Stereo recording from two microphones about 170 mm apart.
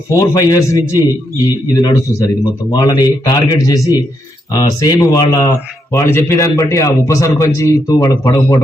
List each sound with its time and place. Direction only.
0.1 s a man's voice: 20° left (ahead or behind)